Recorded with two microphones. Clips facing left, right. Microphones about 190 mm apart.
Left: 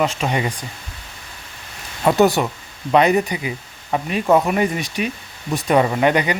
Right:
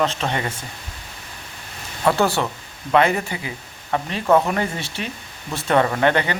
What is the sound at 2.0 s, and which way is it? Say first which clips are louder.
Speech: left 4 dB; 15° left (ahead or behind).